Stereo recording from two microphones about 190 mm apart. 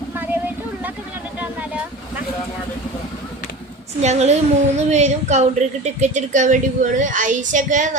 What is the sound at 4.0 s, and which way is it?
A woman's voice, 35° right (ahead or behind).